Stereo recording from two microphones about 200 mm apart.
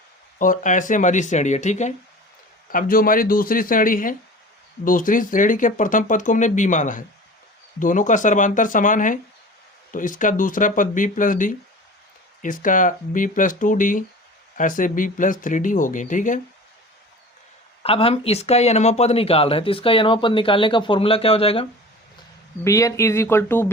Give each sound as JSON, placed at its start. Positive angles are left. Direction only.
{"t": 0.3, "sound": "speech", "side_deg": 40}
{"t": 2.7, "sound": "speech", "side_deg": 45}
{"t": 17.8, "sound": "speech", "side_deg": 30}
{"t": 22.6, "sound": "speech", "side_deg": 15}